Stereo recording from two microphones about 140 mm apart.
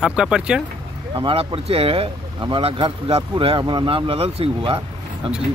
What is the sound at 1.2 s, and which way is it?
Speech, 40° right (ahead or behind).